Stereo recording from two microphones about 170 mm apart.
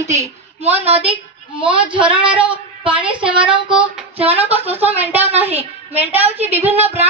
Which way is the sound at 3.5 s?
30° right (ahead or behind).